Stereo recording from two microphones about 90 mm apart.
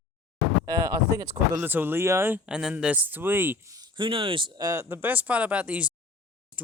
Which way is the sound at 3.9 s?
75° right (ahead or behind).